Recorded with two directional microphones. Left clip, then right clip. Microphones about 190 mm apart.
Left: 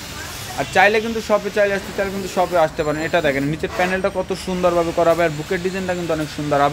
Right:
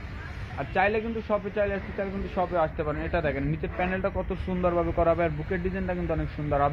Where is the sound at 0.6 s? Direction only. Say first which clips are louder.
Left 10 dB; 20° left (ahead or behind).